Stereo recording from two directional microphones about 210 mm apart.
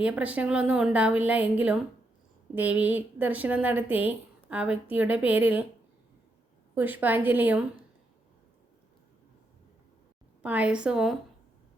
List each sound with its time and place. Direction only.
0.0 s a woman's voice: 5° right (ahead or behind)
6.7 s a woman's voice: 10° right (ahead or behind)
10.4 s a woman's voice: 5° right (ahead or behind)